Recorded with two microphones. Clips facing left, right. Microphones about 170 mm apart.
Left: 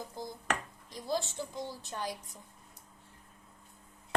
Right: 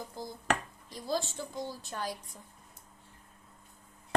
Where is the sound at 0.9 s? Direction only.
20° left (ahead or behind).